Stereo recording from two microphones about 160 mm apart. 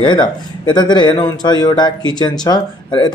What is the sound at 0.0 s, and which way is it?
A man's voice, 30° left (ahead or behind).